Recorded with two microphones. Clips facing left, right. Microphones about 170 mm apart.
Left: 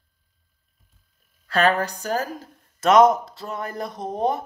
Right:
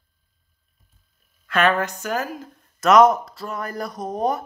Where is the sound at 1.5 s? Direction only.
35° left (ahead or behind).